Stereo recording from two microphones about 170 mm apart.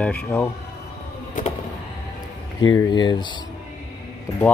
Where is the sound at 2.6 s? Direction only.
25° left (ahead or behind).